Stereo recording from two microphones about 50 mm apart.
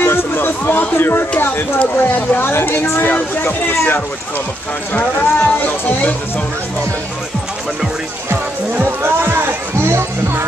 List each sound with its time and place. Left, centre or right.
0.0 s a sound: left
1.8 s speech: left
2.6 s a woman's voice: left
3.1 s speech: left
4.9 s speech: left
8.8 s music: right